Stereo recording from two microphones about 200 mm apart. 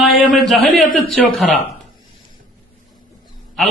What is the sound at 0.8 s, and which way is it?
Speech, 45° left (ahead or behind).